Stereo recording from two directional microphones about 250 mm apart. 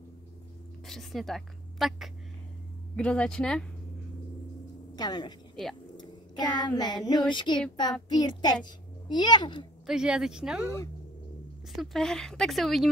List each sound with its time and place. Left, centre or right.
0.8 s a woman's voice: centre
4.9 s a woman's voice: centre
5.9 s a sound: centre
7.1 s child singing: centre
8.6 s a woman's voice: centre
9.8 s speech: centre
11.7 s speech: centre